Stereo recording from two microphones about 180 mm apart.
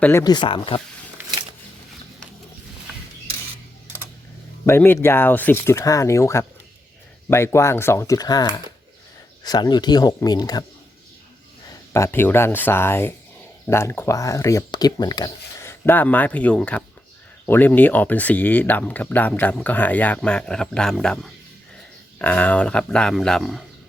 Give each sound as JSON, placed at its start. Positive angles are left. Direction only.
{"t": 0.0, "sound": "speech", "side_deg": 15}
{"t": 4.6, "sound": "speech", "side_deg": 15}
{"t": 11.9, "sound": "speech", "side_deg": 15}